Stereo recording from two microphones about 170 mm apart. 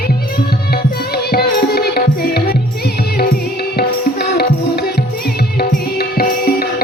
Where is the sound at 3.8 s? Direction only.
70° left (ahead or behind).